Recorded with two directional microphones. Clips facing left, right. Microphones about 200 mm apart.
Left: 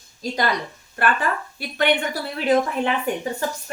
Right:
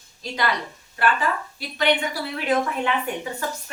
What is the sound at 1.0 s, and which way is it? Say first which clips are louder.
Speech: even; 50° left (ahead or behind).